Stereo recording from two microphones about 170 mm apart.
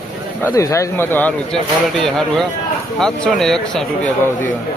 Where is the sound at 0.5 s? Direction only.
20° left (ahead or behind).